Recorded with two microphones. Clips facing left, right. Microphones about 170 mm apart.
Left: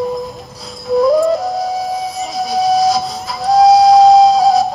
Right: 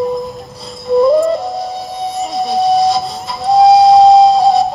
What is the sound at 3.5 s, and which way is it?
Music, centre (ahead or behind).